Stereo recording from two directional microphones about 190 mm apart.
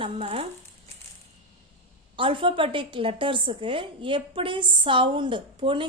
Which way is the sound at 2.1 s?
25° right (ahead or behind).